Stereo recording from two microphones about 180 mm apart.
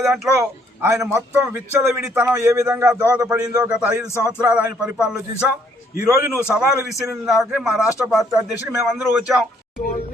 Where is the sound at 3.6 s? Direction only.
5° right (ahead or behind).